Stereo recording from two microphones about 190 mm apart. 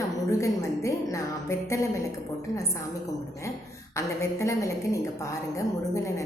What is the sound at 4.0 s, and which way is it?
A woman's voice, 15° left (ahead or behind).